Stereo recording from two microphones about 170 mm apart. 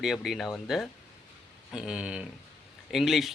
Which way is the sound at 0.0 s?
Centre (ahead or behind).